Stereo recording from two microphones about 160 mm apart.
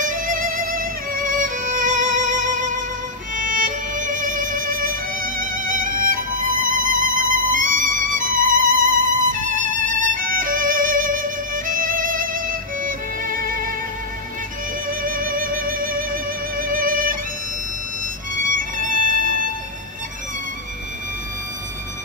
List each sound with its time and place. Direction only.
0.2 s music: 60° right (ahead or behind)
15.0 s music: 60° right (ahead or behind)
18.5 s music: 55° right (ahead or behind)